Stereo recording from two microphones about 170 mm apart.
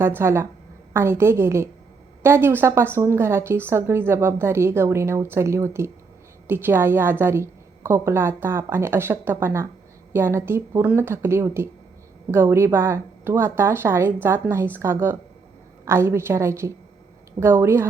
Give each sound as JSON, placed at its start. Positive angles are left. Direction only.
{"t": 0.0, "sound": "a woman's voice", "side_deg": -15}